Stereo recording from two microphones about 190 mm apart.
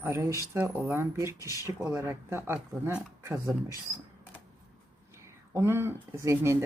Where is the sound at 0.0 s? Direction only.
15° right (ahead or behind).